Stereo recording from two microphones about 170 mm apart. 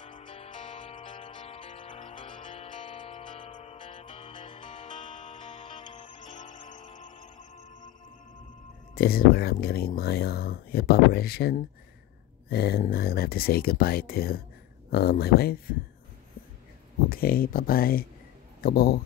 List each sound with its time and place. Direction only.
0.0 s music: 30° left (ahead or behind)
8.9 s speech: 60° left (ahead or behind)
12.4 s a sound: 65° left (ahead or behind)
12.9 s speech: 65° left (ahead or behind)
17.1 s speech: 60° left (ahead or behind)